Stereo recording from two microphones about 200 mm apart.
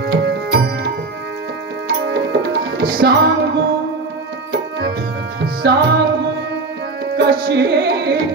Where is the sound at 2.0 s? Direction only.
55° right (ahead or behind).